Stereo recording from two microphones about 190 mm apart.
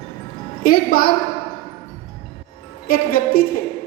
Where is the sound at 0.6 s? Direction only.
50° left (ahead or behind).